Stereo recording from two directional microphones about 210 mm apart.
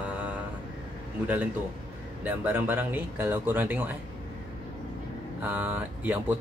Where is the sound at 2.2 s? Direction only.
10° right (ahead or behind).